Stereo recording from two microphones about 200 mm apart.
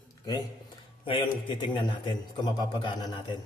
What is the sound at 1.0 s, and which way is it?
A man's voice, 25° left (ahead or behind).